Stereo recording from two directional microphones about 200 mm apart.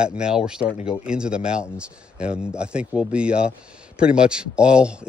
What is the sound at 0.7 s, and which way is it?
Speech, 25° left (ahead or behind).